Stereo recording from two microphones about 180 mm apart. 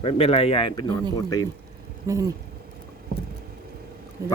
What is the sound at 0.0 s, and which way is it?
A man's voice, 35° left (ahead or behind).